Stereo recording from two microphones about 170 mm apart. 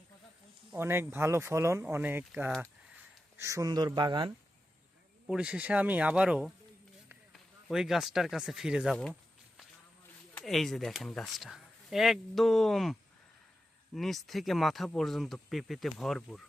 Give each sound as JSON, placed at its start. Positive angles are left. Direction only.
{"t": 0.7, "sound": "speech", "side_deg": -15}
{"t": 5.2, "sound": "speech", "side_deg": -5}
{"t": 10.3, "sound": "speech", "side_deg": 0}